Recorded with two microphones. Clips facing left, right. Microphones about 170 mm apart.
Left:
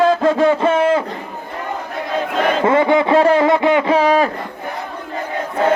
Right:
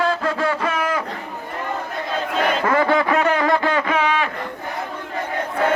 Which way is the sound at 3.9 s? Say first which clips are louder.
Left 7 dB; 40° left (ahead or behind).